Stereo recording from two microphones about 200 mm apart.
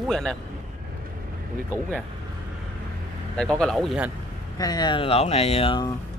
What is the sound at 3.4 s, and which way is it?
Speech, 5° left (ahead or behind).